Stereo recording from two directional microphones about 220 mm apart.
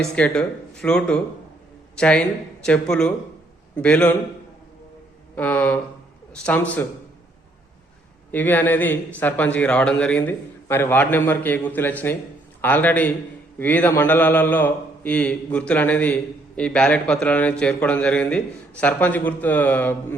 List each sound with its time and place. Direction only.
0.0 s speech: 5° left (ahead or behind)
5.3 s a man's voice: 5° left (ahead or behind)
8.3 s a man's voice: 10° left (ahead or behind)